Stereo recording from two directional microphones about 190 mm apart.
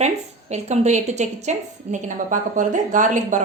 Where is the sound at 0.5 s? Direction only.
35° right (ahead or behind).